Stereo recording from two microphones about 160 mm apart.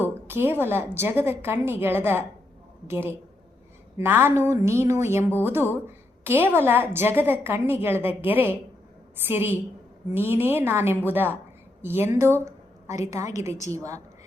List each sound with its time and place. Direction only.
0.0 s a woman's voice: 15° right (ahead or behind)